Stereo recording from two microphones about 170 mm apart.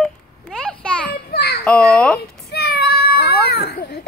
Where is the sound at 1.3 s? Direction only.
70° left (ahead or behind).